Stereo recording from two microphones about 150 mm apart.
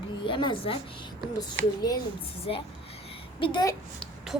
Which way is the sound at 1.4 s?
25° left (ahead or behind).